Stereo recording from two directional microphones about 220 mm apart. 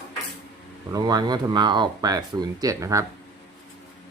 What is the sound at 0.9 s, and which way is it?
Speech, 15° right (ahead or behind).